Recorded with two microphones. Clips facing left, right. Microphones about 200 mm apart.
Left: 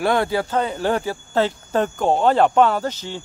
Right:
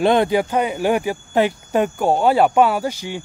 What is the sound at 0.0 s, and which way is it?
Speech, 20° right (ahead or behind).